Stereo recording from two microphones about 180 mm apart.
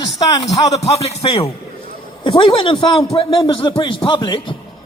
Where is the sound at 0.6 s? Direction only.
30° left (ahead or behind).